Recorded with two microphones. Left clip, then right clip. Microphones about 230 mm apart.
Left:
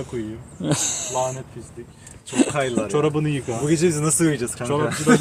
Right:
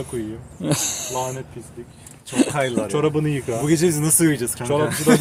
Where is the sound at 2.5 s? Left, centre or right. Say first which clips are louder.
Right 1 dB; right.